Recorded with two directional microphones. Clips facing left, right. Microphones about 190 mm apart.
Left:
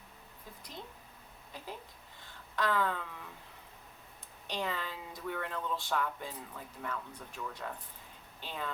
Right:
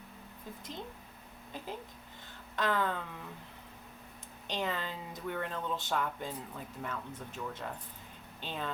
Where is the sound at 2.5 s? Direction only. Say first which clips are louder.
Even; 20° right (ahead or behind).